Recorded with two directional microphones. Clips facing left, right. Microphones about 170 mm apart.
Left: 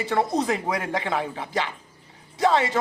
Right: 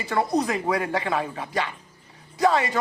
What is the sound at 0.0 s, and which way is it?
Speech, 25° left (ahead or behind).